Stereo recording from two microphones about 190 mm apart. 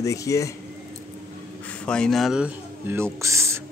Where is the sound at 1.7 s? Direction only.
5° left (ahead or behind); by 3.6 s 15° right (ahead or behind).